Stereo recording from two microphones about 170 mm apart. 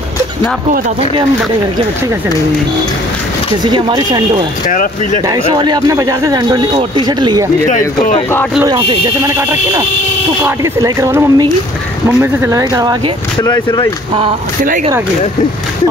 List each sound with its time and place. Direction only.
3.6 s speech: 25° right (ahead or behind)
4.6 s speech: 50° left (ahead or behind)
5.3 s speech: 25° right (ahead or behind)
7.6 s speech: 45° left (ahead or behind)
8.6 s speech: 20° right (ahead or behind)
13.4 s speech: 25° left (ahead or behind)